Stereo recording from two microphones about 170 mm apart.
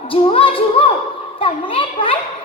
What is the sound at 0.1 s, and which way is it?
A child's voice, 30° left (ahead or behind).